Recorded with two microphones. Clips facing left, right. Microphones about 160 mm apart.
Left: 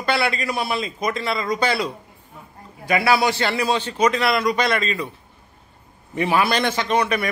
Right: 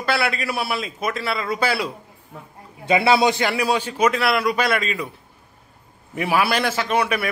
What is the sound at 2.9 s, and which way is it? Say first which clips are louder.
A man's voice: right 2 dB; 25° right (ahead or behind).